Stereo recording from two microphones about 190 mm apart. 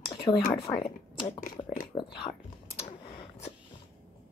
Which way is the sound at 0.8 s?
30° left (ahead or behind).